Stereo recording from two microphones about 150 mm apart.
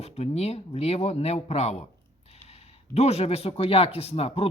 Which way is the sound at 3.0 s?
45° left (ahead or behind).